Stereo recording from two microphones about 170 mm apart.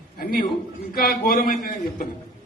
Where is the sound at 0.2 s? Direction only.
60° left (ahead or behind).